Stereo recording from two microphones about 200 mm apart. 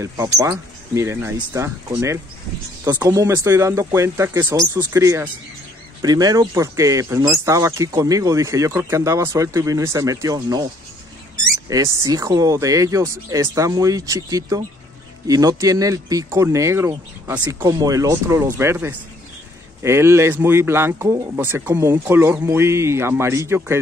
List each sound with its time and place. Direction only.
0.0 s speech: 15° right (ahead or behind)
11.7 s speech: 15° right (ahead or behind)